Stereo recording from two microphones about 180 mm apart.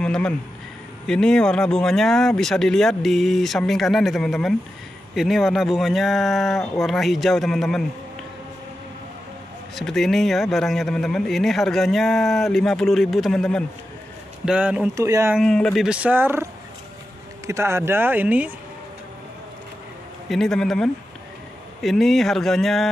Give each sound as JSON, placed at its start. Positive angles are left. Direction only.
{"t": 0.0, "sound": "a man's voice", "side_deg": 5}
{"t": 9.8, "sound": "a man's voice", "side_deg": 0}
{"t": 15.0, "sound": "speech", "side_deg": -15}
{"t": 15.3, "sound": "a man's voice", "side_deg": 5}
{"t": 17.5, "sound": "speech", "side_deg": -15}
{"t": 20.2, "sound": "a man's voice", "side_deg": 5}